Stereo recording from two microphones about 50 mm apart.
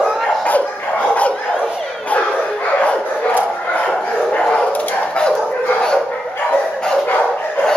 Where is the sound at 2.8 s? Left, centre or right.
Left.